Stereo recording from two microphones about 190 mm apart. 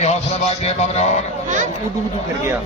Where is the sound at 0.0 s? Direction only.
35° left (ahead or behind).